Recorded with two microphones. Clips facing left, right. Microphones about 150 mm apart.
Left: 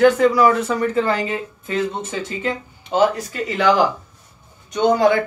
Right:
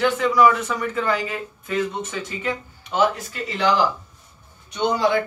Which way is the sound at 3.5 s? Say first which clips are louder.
Left 3 dB; 50° left (ahead or behind).